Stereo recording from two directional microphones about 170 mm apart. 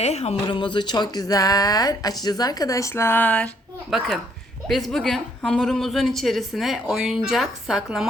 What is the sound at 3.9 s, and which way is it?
A woman's voice, centre (ahead or behind).